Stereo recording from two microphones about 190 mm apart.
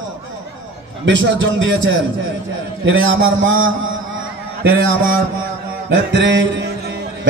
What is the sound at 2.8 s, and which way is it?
Speech, 85° right.